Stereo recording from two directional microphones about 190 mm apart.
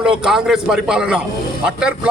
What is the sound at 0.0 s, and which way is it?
A man's voice, 5° right (ahead or behind).